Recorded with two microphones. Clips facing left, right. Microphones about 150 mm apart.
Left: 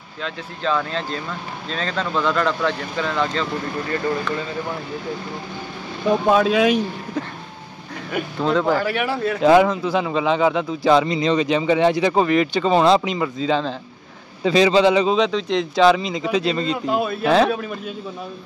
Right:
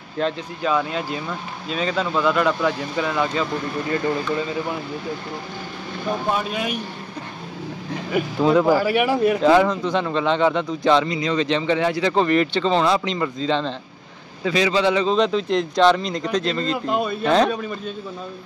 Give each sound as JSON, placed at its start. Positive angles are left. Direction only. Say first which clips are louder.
{"t": 0.2, "sound": "speech", "louder": "right 8 dB", "side_deg": -50}
{"t": 0.6, "sound": "speech", "louder": "left 1 dB", "side_deg": -10}
{"t": 6.3, "sound": "speech", "louder": "left 9 dB", "side_deg": 90}
{"t": 8.1, "sound": "speech", "louder": "right 3 dB", "side_deg": -10}
{"t": 9.4, "sound": "speech", "louder": "left 6 dB", "side_deg": 10}
{"t": 11.1, "sound": "speech", "louder": "left 4 dB", "side_deg": 30}
{"t": 11.3, "sound": "speech", "louder": "left 1 dB", "side_deg": 10}
{"t": 14.4, "sound": "speech", "louder": "left 4 dB", "side_deg": 30}
{"t": 15.1, "sound": "speech", "louder": "even", "side_deg": 0}